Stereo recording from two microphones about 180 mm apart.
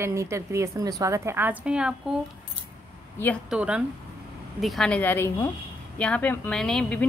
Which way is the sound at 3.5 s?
5° right (ahead or behind).